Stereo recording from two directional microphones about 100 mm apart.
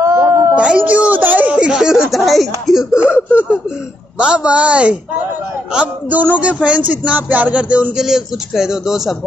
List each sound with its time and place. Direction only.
0.0 s a sound: 25° right (ahead or behind)
0.6 s speech: 10° right (ahead or behind)
4.2 s speech: 10° right (ahead or behind)